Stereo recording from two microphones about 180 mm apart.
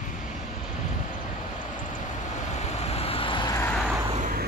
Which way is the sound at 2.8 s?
35° left (ahead or behind).